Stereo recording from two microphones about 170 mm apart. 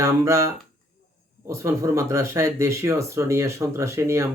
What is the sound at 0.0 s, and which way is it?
Speech, 20° right (ahead or behind).